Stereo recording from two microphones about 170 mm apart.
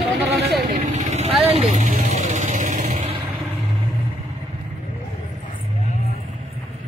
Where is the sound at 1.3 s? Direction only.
Centre (ahead or behind).